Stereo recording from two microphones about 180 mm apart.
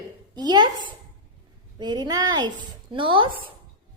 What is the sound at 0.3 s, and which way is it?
Speech, 25° right (ahead or behind).